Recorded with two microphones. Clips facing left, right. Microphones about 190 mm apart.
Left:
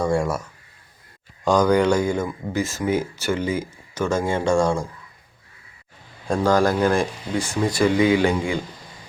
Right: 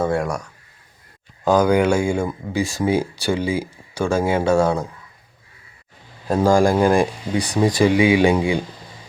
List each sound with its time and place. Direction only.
0.0 s speech: centre (ahead or behind)
1.5 s speech: 5° right (ahead or behind)
6.4 s speech: 10° right (ahead or behind)